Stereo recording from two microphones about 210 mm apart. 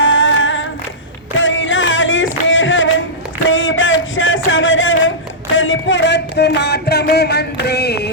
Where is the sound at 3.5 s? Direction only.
65° left (ahead or behind).